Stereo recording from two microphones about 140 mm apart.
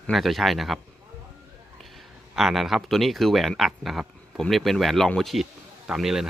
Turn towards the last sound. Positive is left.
turn(degrees=-5)  # may be behind; listen again after turning